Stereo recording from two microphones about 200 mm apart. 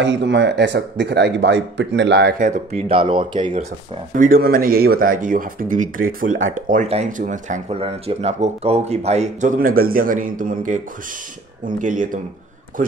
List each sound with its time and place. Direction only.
0.0 s speech: 65° right (ahead or behind)
2.3 s speech: 40° right (ahead or behind)
4.2 s speech: 45° right (ahead or behind)